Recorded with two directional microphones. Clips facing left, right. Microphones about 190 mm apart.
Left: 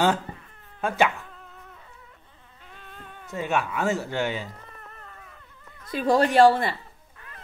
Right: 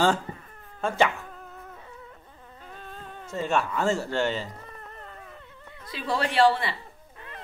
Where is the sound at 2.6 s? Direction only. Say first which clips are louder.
Right 4 dB; 40° right (ahead or behind).